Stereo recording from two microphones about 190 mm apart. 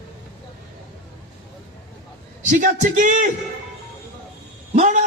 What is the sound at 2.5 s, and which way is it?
Speech, 45° right (ahead or behind).